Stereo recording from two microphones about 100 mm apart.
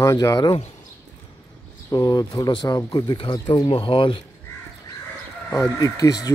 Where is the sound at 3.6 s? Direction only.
65° left (ahead or behind).